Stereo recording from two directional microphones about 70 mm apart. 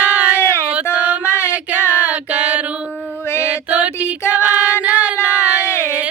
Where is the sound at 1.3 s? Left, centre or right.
Right.